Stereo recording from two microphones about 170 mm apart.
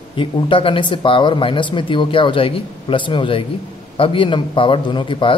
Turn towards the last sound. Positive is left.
turn(degrees=30)  # may be behind; listen again after turning